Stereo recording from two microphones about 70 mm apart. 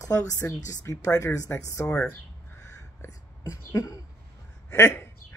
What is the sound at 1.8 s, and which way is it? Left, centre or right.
Speech, left.